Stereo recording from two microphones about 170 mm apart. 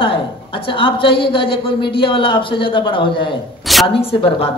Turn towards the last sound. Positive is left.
turn(degrees=35)  # may be behind; listen again after turning